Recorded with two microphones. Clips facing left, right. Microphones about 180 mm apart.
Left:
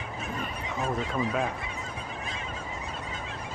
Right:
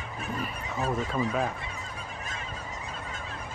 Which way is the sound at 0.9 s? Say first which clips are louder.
Even; centre (ahead or behind).